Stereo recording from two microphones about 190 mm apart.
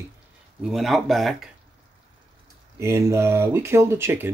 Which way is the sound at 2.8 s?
15° right (ahead or behind).